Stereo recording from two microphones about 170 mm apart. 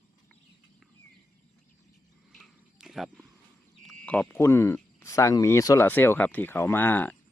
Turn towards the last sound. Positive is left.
turn(degrees=10)  # may be behind; listen again after turning